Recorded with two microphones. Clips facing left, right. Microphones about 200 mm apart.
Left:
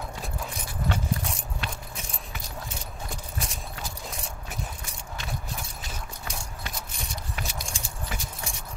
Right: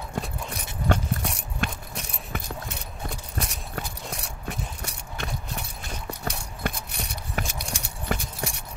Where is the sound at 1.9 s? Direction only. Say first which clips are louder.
Right 5 dB; 65° right (ahead or behind).